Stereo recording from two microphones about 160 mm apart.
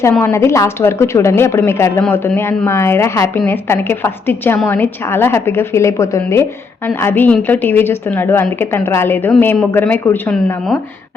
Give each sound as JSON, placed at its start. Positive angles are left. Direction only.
{"t": 0.1, "sound": "a woman's voice", "side_deg": 15}